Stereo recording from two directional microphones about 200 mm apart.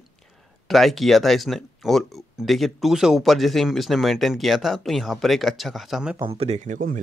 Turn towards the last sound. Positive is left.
turn(degrees=-40)  # may be behind; listen again after turning